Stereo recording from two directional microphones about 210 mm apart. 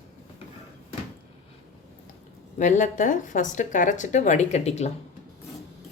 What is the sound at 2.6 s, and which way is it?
A woman's voice, 35° left (ahead or behind).